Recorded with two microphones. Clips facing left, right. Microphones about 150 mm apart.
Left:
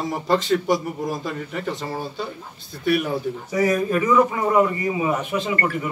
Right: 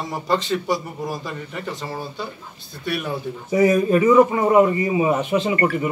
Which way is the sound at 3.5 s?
25° right (ahead or behind).